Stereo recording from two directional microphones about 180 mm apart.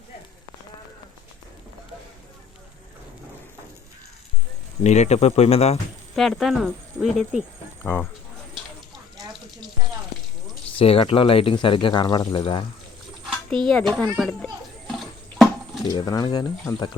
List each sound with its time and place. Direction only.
4.8 s speech: 40° left (ahead or behind)
6.1 s speech: centre (ahead or behind)
10.8 s speech: 30° left (ahead or behind)
13.7 s a sound: centre (ahead or behind)
15.9 s speech: 20° left (ahead or behind)